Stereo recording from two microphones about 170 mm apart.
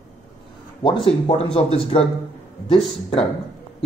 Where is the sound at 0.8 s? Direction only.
30° left (ahead or behind).